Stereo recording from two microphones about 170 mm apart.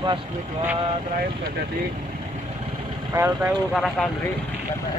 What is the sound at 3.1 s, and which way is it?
Speech, 15° right (ahead or behind).